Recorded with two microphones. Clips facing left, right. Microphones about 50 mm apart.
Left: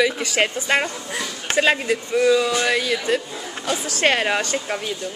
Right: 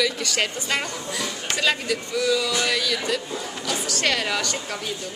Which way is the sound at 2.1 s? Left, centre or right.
Left.